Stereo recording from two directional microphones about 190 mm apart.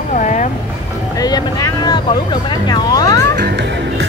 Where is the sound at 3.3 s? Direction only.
65° right (ahead or behind).